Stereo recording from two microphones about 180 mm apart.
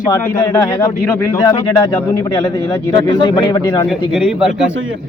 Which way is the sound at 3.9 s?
Centre (ahead or behind).